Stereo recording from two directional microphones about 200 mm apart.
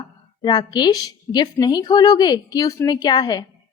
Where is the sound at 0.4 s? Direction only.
20° left (ahead or behind).